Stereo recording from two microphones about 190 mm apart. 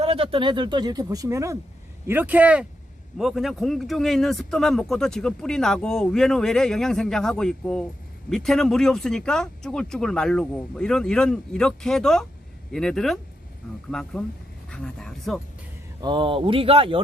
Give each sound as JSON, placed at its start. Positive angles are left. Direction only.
{"t": 0.0, "sound": "speech", "side_deg": -30}
{"t": 16.0, "sound": "speech", "side_deg": -25}